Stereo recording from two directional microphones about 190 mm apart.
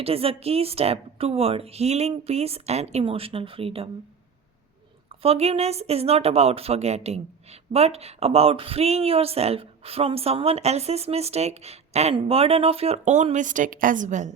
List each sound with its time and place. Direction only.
0.0 s speech: 30° right (ahead or behind)
5.0 s speech: 30° right (ahead or behind)